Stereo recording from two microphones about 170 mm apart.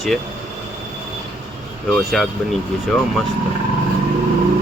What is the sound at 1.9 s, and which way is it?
Speech, centre (ahead or behind).